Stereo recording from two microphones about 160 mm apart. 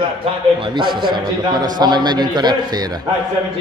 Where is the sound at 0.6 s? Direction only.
30° right (ahead or behind).